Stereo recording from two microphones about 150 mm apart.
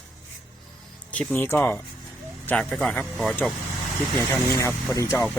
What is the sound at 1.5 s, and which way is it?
A man's voice, 15° left (ahead or behind).